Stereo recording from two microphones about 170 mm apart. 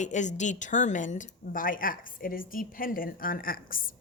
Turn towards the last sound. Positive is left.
turn(degrees=55)  # may be behind; listen again after turning